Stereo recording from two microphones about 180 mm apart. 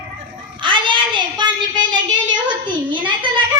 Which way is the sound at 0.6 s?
25° right (ahead or behind).